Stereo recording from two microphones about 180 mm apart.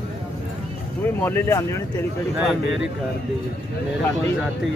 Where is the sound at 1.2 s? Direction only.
15° left (ahead or behind).